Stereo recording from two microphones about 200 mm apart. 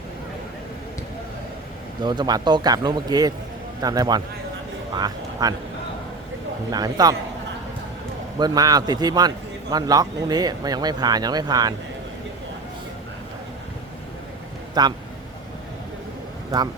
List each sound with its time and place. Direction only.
2.0 s a man's voice: 20° right (ahead or behind)
6.7 s a man's voice: 20° right (ahead or behind)
8.4 s a man's voice: 20° right (ahead or behind)
14.8 s a man's voice: 20° right (ahead or behind)